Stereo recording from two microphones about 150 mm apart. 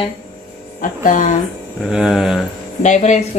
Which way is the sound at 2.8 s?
50° left (ahead or behind).